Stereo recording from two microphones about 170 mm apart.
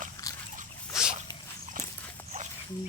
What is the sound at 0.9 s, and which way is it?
Dog, 5° right (ahead or behind).